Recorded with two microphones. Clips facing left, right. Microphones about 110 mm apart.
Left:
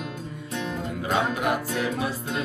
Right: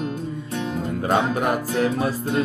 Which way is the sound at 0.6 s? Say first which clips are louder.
Right 6 dB; 40° right (ahead or behind).